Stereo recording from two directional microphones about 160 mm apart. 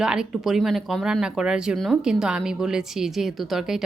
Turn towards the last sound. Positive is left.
turn(degrees=0)  # may be behind; listen again after turning